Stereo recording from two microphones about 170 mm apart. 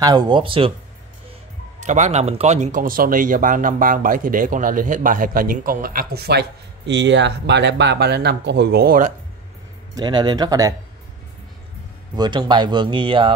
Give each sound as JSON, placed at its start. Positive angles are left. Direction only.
{"t": 0.0, "sound": "speech", "side_deg": -25}
{"t": 1.8, "sound": "speech", "side_deg": -45}
{"t": 6.9, "sound": "speech", "side_deg": -90}
{"t": 9.9, "sound": "speech", "side_deg": -25}
{"t": 12.2, "sound": "speech", "side_deg": -25}